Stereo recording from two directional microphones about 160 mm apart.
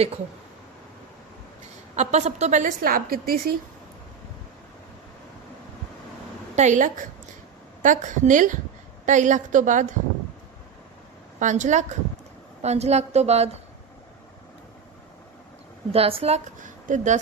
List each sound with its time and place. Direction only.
2.0 s a woman's voice: 45° right (ahead or behind); by 3.5 s 65° right (ahead or behind)
6.6 s a woman's voice: 50° right (ahead or behind)
11.3 s a woman's voice: 50° right (ahead or behind)
15.9 s a woman's voice: 35° right (ahead or behind)